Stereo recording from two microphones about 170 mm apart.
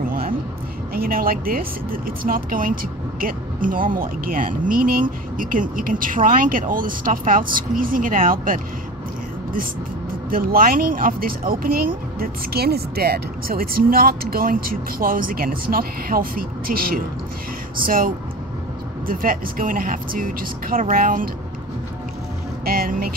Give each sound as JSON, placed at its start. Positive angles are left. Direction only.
{"t": 0.0, "sound": "a sound", "side_deg": -60}
{"t": 0.9, "sound": "speech", "side_deg": -60}
{"t": 10.3, "sound": "speech", "side_deg": -60}
{"t": 22.7, "sound": "speech", "side_deg": -60}